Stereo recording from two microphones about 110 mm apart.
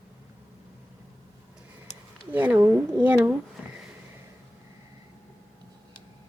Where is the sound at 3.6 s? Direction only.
15° right (ahead or behind).